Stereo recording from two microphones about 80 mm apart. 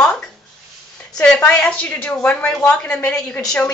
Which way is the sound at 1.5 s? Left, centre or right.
Centre.